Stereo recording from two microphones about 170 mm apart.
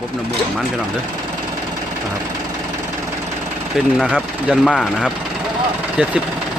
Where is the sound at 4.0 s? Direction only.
5° right (ahead or behind).